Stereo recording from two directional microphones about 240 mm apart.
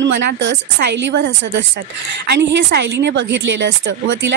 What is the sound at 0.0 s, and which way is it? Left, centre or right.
A woman's voice, right.